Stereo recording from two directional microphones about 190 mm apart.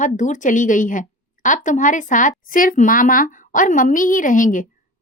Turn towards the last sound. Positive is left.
turn(degrees=45)  # may be behind; listen again after turning